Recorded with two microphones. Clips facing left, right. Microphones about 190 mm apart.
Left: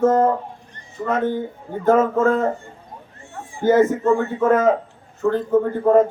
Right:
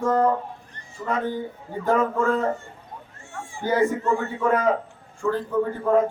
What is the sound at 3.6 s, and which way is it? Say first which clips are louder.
A man's voice: left 6 dB; 50° left (ahead or behind).